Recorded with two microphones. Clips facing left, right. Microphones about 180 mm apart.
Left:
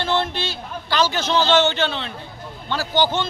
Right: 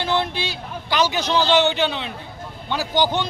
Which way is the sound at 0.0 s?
10° right (ahead or behind).